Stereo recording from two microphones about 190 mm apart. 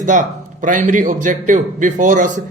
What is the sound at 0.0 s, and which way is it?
A man's voice, 40° right (ahead or behind).